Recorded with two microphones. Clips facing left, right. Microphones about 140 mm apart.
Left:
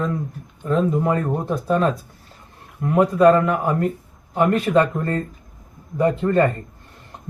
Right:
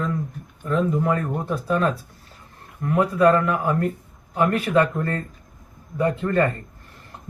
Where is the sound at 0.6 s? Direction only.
20° left (ahead or behind).